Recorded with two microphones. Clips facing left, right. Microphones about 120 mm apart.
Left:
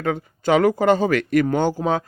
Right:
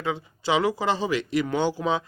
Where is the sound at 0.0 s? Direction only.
50° left (ahead or behind).